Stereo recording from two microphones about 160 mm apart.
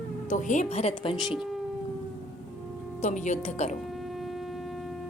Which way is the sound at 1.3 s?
Centre (ahead or behind).